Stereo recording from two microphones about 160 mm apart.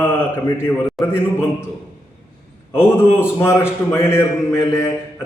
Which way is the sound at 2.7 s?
15° left (ahead or behind).